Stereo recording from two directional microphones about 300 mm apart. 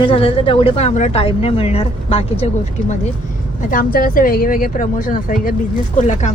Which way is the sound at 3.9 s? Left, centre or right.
Left.